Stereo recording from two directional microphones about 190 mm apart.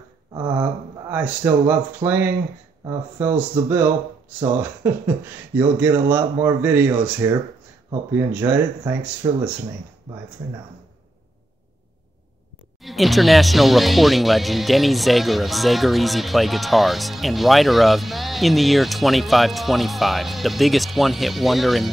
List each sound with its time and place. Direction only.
0.3 s a sound: 20° right (ahead or behind)
1.1 s a man's voice: 10° right (ahead or behind)
12.8 s speech: centre (ahead or behind)